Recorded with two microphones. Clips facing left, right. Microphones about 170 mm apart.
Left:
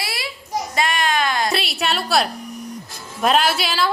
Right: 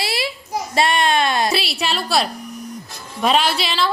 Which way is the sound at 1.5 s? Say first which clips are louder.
Even; centre (ahead or behind).